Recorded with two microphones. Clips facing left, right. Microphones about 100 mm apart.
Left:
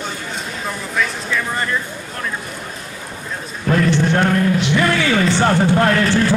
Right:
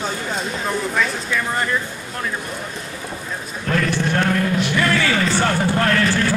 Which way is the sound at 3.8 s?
20° left (ahead or behind).